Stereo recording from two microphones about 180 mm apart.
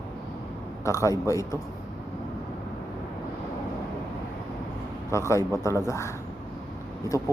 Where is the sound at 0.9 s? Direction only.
15° left (ahead or behind).